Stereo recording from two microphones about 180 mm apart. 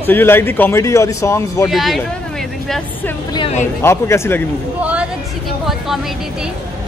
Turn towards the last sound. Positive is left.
turn(degrees=0)  # may be behind; listen again after turning